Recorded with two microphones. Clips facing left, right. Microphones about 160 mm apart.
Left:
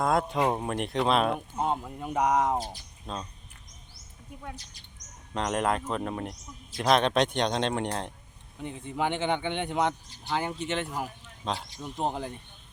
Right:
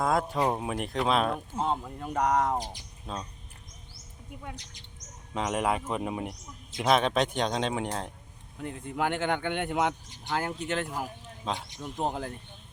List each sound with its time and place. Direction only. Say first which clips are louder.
0.0 s speech: left 1 dB; centre (ahead or behind)
3.1 s speech: even; 5° right (ahead or behind)
4.5 s speech: right 1 dB; 20° right (ahead or behind)
5.3 s speech: left 1 dB; 5° right (ahead or behind)